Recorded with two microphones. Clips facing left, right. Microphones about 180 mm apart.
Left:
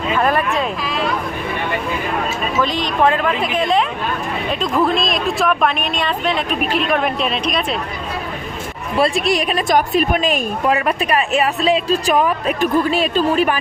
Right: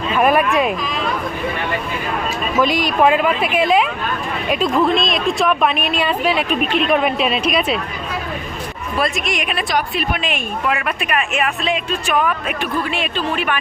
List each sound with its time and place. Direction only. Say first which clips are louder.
0.2 s speech: right 4 dB; 15° right (ahead or behind)
2.6 s speech: right 2 dB; 10° right (ahead or behind)
4.9 s speech: right 1 dB; centre (ahead or behind)
9.0 s a woman's voice: left 5 dB; 30° left (ahead or behind)